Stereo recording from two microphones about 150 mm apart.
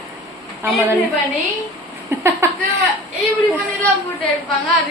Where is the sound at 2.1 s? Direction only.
15° right (ahead or behind).